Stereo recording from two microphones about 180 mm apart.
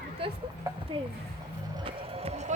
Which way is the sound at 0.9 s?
30° right (ahead or behind).